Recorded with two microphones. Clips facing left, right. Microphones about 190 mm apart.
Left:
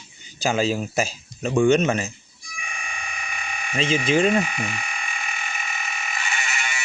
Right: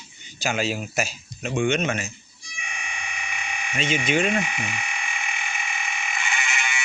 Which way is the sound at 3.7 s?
30° left (ahead or behind).